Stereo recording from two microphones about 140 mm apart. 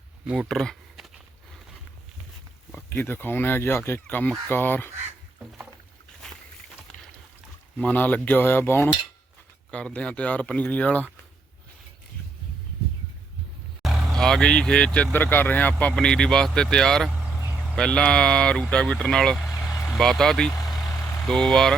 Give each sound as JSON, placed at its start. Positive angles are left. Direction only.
{"t": 0.3, "sound": "speech", "side_deg": 0}
{"t": 2.7, "sound": "speech", "side_deg": 15}
{"t": 7.8, "sound": "speech", "side_deg": 10}
{"t": 14.1, "sound": "speech", "side_deg": 5}
{"t": 17.1, "sound": "vehicle", "side_deg": -10}
{"t": 17.7, "sound": "speech", "side_deg": 5}